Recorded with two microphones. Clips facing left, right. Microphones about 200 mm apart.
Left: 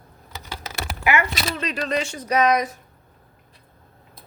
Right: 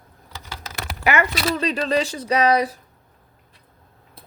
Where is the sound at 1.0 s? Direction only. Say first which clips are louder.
Right 2 dB; 40° right (ahead or behind).